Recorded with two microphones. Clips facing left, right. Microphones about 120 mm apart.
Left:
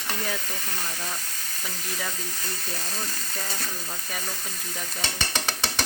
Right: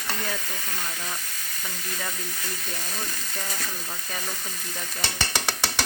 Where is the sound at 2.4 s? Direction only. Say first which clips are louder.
Even; 35° left (ahead or behind).